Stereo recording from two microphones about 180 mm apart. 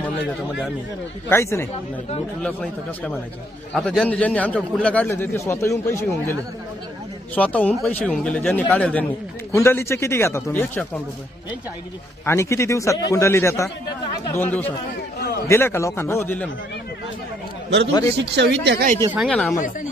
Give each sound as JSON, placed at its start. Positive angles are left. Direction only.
{"t": 1.3, "sound": "a man's voice", "side_deg": 15}
{"t": 2.4, "sound": "a man's voice", "side_deg": 5}
{"t": 7.3, "sound": "a man's voice", "side_deg": 10}
{"t": 12.3, "sound": "a man's voice", "side_deg": 15}
{"t": 18.1, "sound": "speech", "side_deg": -70}
{"t": 19.1, "sound": "speech", "side_deg": 0}